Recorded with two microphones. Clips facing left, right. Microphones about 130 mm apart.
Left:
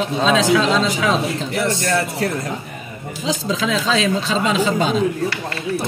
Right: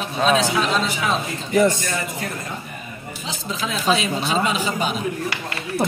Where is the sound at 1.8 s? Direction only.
70° left (ahead or behind).